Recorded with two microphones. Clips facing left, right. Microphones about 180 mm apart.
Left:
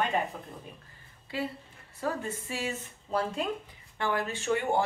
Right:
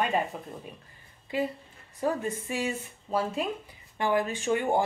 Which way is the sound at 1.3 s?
15° right (ahead or behind).